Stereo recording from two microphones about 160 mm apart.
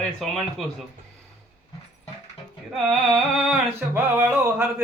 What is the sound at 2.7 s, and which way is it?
Speech, centre (ahead or behind).